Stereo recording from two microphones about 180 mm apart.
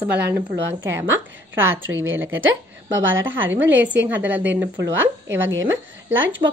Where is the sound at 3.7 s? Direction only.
10° right (ahead or behind).